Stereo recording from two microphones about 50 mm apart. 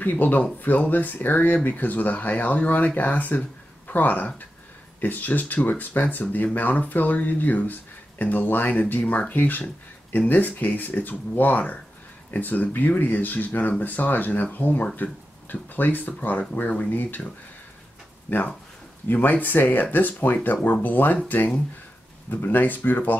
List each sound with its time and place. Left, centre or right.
0.0 s speech: left
3.3 s a sound: left
5.0 s speech: left
18.3 s speech: left
22.3 s speech: left